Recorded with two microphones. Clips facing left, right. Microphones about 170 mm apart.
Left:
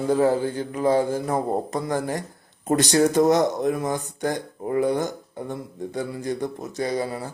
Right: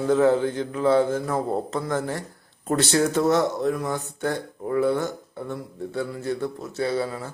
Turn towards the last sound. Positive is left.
turn(degrees=15)  # may be behind; listen again after turning